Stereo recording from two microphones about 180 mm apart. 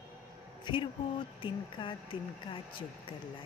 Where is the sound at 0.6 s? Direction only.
25° left (ahead or behind).